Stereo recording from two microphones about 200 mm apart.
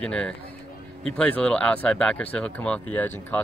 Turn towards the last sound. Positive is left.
turn(degrees=10)  # may be behind; listen again after turning